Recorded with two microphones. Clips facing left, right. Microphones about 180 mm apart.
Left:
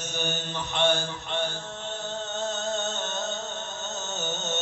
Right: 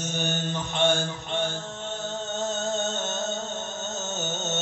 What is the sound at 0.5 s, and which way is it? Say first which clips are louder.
Mantra: even; 45° right (ahead or behind).